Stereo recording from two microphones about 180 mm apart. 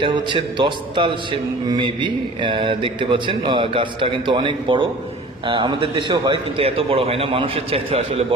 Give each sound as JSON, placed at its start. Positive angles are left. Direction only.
{"t": 0.0, "sound": "a man's voice", "side_deg": -25}